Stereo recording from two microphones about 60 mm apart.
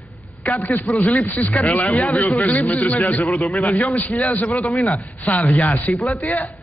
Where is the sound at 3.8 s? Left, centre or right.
Left.